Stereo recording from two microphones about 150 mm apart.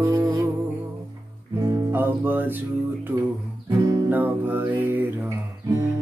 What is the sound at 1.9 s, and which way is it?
Music, 10° right (ahead or behind).